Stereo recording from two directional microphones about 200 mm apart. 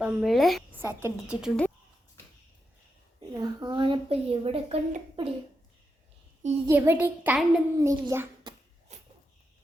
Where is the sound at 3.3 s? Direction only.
20° right (ahead or behind).